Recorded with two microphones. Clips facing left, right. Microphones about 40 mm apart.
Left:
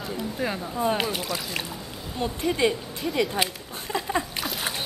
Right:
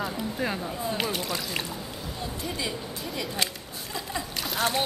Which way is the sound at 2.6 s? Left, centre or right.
Left.